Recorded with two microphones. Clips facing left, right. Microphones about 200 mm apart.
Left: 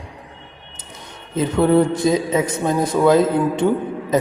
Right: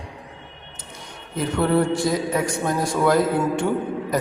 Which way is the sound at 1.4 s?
20° left (ahead or behind).